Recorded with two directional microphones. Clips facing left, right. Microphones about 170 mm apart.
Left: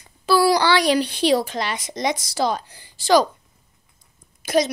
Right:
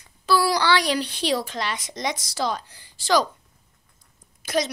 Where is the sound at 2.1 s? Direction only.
50° left (ahead or behind).